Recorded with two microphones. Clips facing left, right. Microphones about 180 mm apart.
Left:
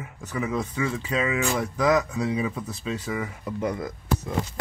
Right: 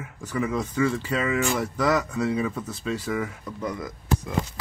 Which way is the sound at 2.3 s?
10° left (ahead or behind).